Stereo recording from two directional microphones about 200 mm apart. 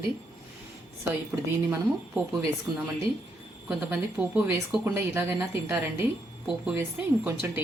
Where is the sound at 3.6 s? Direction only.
10° right (ahead or behind).